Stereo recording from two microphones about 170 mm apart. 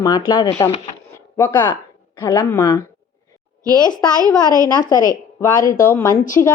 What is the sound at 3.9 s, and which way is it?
Speech, 5° left (ahead or behind).